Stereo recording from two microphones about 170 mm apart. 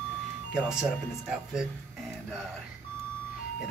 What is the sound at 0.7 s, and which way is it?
Speech, 5° right (ahead or behind).